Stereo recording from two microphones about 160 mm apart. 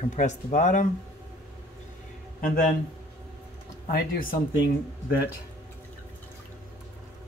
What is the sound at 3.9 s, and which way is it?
Speech, 75° left (ahead or behind).